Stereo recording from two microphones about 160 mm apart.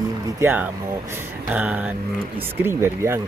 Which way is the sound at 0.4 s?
15° right (ahead or behind).